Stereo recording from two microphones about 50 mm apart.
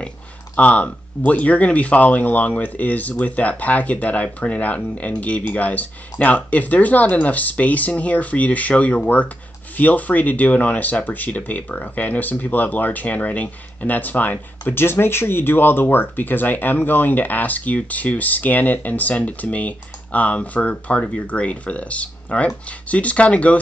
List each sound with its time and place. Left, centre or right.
0.6 s speech: left
14.7 s speech: left